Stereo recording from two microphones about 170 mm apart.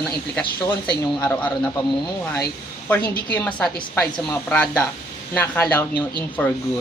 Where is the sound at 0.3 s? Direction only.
10° left (ahead or behind).